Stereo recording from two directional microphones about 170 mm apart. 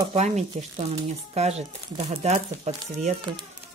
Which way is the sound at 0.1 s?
40° right (ahead or behind).